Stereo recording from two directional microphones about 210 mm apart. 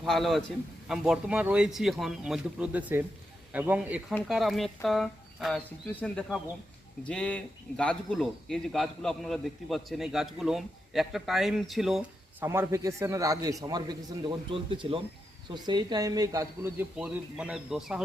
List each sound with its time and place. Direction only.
0.0 s a man's voice: centre (ahead or behind)
12.5 s a man's voice: 15° right (ahead or behind)